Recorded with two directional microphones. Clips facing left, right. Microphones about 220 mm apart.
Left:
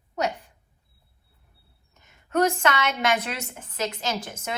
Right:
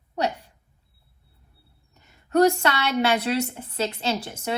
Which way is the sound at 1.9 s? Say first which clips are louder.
Right 4 dB; 35° right (ahead or behind).